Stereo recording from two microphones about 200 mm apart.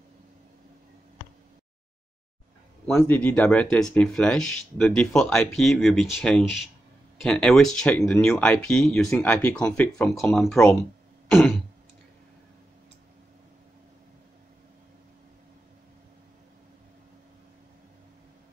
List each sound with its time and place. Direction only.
3.0 s speech: 10° left (ahead or behind)